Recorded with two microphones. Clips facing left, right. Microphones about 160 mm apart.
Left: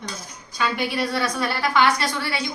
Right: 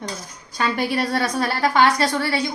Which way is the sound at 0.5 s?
45° right (ahead or behind).